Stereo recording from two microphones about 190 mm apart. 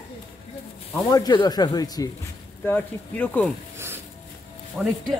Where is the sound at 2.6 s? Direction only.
10° left (ahead or behind).